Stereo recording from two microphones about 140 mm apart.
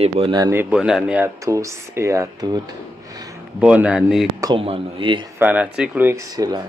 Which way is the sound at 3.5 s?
10° right (ahead or behind).